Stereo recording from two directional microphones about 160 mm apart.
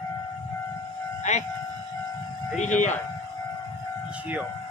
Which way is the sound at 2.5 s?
50° left (ahead or behind).